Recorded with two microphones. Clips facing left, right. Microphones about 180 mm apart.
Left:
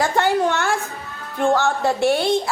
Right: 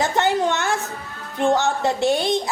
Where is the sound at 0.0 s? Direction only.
20° right (ahead or behind).